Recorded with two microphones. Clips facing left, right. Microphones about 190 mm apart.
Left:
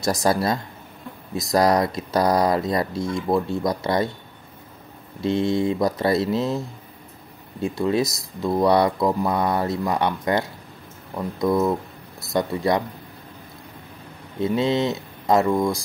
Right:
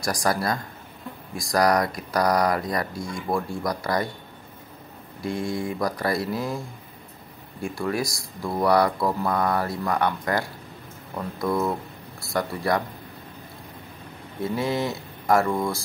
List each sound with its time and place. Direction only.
0.0 s speech: 25° left (ahead or behind)
5.2 s speech: 25° left (ahead or behind)
7.6 s speech: 20° left (ahead or behind)
14.4 s speech: 20° left (ahead or behind)